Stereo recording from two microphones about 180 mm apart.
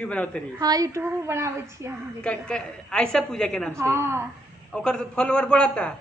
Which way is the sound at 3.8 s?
15° right (ahead or behind).